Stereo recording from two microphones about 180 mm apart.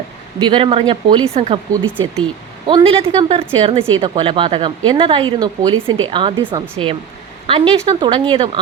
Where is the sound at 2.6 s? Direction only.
30° right (ahead or behind).